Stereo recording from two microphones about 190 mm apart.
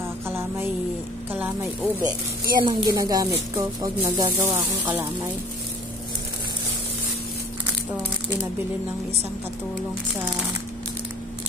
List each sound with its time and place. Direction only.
0.3 s music: 10° right (ahead or behind)
1.3 s speech: 10° right (ahead or behind)